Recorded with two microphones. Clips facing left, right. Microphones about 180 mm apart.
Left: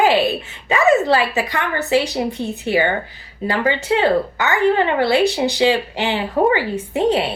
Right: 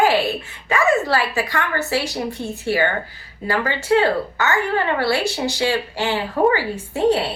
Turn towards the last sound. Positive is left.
turn(degrees=20)  # may be behind; listen again after turning